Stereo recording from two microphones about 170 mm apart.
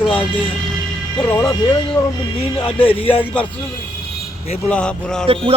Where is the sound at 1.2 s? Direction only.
15° left (ahead or behind).